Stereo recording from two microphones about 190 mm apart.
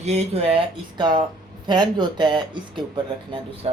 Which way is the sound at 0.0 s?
35° right (ahead or behind).